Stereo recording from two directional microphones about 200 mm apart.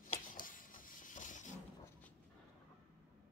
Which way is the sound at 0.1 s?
40° left (ahead or behind).